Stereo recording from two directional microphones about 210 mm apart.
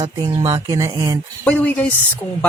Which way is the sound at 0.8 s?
15° right (ahead or behind).